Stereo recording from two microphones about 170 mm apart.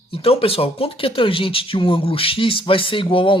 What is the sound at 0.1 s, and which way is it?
Speech, 35° left (ahead or behind).